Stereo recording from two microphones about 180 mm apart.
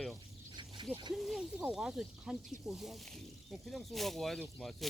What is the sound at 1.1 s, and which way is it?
Speech, centre (ahead or behind).